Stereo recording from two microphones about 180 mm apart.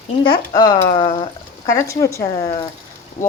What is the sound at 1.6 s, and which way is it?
Speech, 15° left (ahead or behind).